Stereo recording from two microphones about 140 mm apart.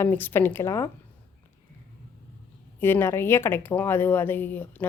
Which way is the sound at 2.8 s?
15° left (ahead or behind).